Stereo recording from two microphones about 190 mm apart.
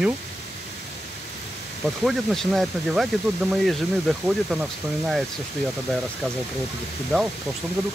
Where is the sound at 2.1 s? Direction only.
Centre (ahead or behind).